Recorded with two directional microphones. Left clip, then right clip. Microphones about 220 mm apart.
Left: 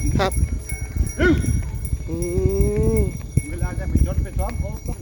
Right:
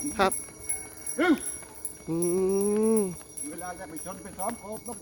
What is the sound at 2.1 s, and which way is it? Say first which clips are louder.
Speech: left 2 dB; 20° right (ahead or behind).